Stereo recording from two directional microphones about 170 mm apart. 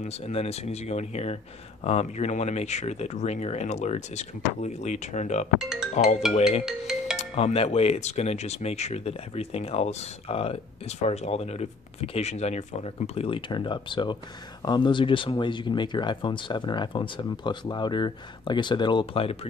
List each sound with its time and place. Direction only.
0.0 s speech: 35° left (ahead or behind)
5.6 s speech: 5° right (ahead or behind)
7.2 s speech: 35° left (ahead or behind)